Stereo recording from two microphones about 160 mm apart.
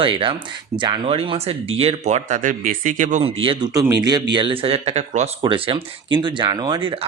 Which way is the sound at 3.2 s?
35° right (ahead or behind).